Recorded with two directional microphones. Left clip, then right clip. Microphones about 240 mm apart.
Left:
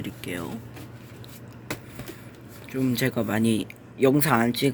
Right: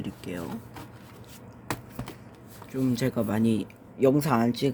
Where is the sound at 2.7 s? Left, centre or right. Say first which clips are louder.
Left 2 dB; centre.